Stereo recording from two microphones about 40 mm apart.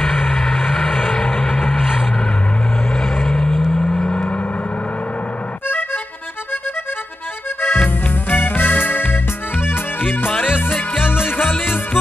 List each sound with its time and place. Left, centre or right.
0.0 s vehicle: centre
3.7 s vehicle: centre
7.6 s music: left